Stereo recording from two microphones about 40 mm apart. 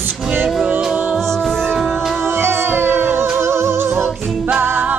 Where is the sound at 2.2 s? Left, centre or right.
Right.